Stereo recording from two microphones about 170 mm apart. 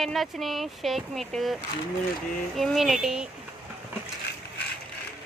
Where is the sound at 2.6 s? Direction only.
Centre (ahead or behind).